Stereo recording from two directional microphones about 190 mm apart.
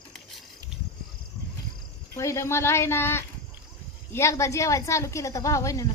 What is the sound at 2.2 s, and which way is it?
A woman's voice, 15° left (ahead or behind).